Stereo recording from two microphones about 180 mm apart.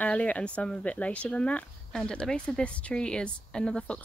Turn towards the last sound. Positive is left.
turn(degrees=5)  # may be behind; listen again after turning